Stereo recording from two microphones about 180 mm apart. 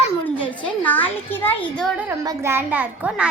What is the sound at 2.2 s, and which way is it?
A child's voice, 15° right (ahead or behind).